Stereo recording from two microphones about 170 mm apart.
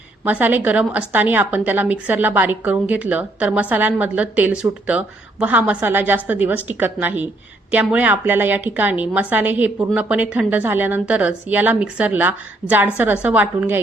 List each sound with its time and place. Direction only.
0.3 s a woman's voice: 10° right (ahead or behind)